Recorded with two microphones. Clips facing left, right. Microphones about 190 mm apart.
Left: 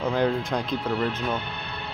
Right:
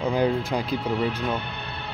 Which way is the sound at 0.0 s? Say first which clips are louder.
Right 1 dB; 10° right (ahead or behind).